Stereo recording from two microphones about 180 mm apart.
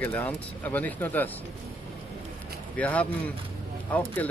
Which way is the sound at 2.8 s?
10° left (ahead or behind).